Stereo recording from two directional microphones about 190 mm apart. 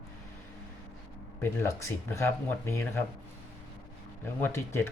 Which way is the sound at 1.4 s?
15° left (ahead or behind).